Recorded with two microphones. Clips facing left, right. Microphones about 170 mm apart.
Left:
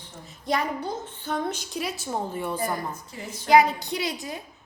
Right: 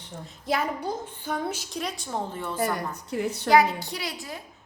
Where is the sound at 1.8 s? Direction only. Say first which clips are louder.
Left 2 dB; 10° left (ahead or behind).